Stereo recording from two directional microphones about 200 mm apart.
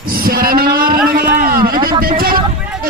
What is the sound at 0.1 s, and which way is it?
Singing, 45° right (ahead or behind).